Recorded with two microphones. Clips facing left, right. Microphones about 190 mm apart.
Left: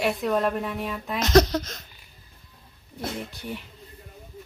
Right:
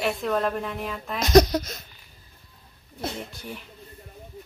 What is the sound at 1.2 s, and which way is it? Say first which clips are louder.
Speech: right 2 dB; 10° right (ahead or behind).